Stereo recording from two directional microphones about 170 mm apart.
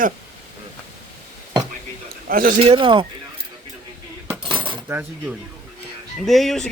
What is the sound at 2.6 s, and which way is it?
Speech, 30° right (ahead or behind).